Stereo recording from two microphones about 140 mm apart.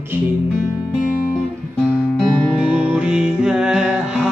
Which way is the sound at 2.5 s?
10° right (ahead or behind).